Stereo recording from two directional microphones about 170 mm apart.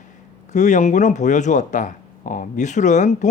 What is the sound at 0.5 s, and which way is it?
Speech, 45° left (ahead or behind).